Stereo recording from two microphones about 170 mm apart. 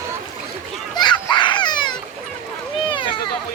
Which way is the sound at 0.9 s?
25° left (ahead or behind).